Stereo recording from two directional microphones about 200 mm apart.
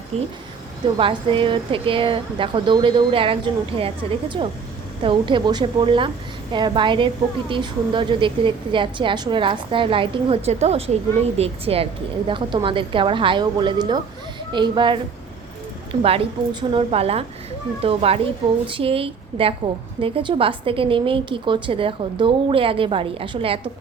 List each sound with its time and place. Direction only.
0.1 s a woman's voice: 30° right (ahead or behind)